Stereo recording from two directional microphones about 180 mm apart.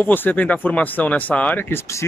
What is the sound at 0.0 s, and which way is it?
Speech, 10° left (ahead or behind).